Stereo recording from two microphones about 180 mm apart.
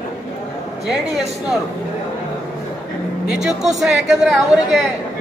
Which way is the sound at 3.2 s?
5° right (ahead or behind).